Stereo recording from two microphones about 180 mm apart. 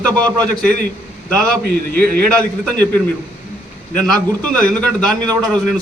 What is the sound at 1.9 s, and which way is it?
Speech, 10° left (ahead or behind).